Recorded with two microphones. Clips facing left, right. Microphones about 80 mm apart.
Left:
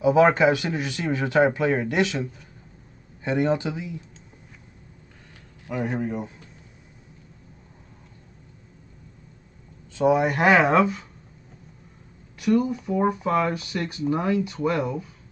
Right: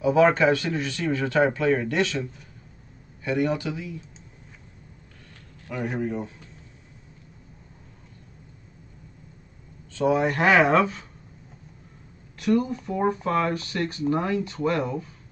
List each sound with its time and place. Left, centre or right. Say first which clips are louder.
0.0 s speech: left 1 dB; centre
3.3 s speech: left 2 dB; left
5.9 s speech: even; centre
9.9 s speech: left 2 dB; centre
12.4 s speech: left 1 dB; centre